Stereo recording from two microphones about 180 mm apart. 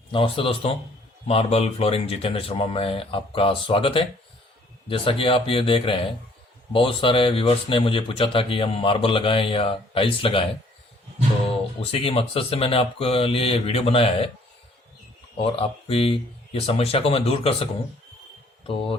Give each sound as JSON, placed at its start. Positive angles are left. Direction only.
{"t": 0.1, "sound": "speech", "side_deg": 30}
{"t": 11.8, "sound": "speech", "side_deg": 35}
{"t": 15.4, "sound": "speech", "side_deg": 30}
{"t": 18.7, "sound": "speech", "side_deg": 30}